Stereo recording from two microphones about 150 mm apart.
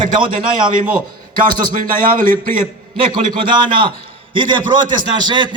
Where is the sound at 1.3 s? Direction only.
70° right (ahead or behind).